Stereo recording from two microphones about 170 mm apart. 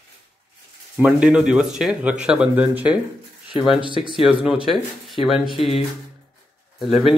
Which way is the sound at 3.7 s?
30° right (ahead or behind).